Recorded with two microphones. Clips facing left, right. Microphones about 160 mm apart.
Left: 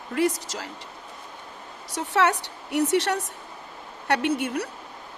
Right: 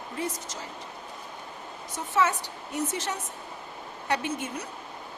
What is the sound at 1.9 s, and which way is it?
Speech, 70° left (ahead or behind).